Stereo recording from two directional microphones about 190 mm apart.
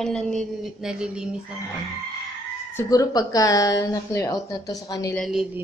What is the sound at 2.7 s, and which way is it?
A woman's voice, 20° left (ahead or behind).